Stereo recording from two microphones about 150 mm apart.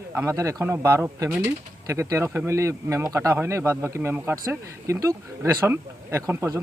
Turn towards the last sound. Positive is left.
turn(degrees=-20)  # may be behind; listen again after turning